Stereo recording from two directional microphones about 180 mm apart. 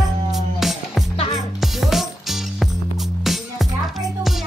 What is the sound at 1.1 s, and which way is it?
Music, 35° left (ahead or behind).